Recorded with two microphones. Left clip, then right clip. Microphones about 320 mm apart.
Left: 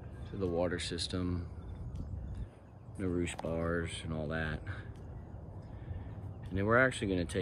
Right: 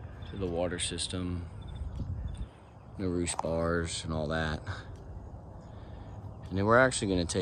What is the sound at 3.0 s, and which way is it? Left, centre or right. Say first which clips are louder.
Speech: right 4 dB; centre.